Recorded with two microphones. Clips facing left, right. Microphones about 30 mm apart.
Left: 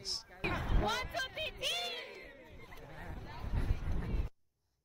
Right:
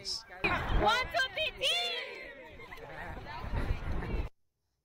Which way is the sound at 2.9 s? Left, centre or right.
Right.